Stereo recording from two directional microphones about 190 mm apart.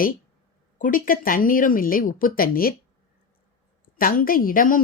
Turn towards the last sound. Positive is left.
turn(degrees=45)  # may be behind; listen again after turning